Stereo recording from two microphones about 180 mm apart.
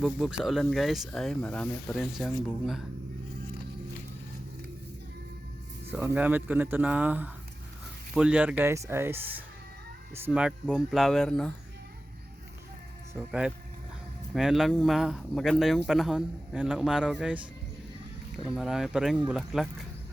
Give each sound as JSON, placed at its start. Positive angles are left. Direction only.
{"t": 0.0, "sound": "speech", "side_deg": -5}
{"t": 5.9, "sound": "speech", "side_deg": -10}
{"t": 10.2, "sound": "speech", "side_deg": -5}
{"t": 13.1, "sound": "speech", "side_deg": -5}
{"t": 18.4, "sound": "speech", "side_deg": 0}